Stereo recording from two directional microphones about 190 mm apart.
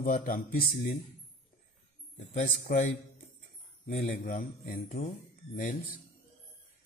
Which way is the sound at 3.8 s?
45° left (ahead or behind).